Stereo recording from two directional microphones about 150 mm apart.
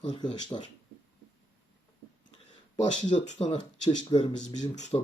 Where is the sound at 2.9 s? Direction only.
30° left (ahead or behind).